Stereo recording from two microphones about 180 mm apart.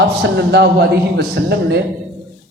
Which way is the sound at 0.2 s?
70° right (ahead or behind).